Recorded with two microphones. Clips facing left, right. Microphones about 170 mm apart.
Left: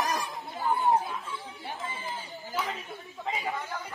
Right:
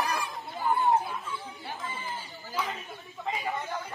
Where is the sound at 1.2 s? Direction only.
10° left (ahead or behind).